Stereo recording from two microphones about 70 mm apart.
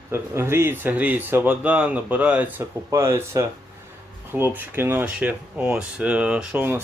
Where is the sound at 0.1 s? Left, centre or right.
Right.